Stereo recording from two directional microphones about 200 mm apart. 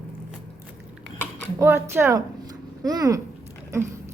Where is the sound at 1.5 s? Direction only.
10° right (ahead or behind).